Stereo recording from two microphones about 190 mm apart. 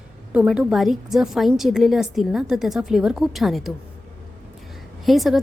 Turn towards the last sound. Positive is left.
turn(degrees=0)  # may be behind; listen again after turning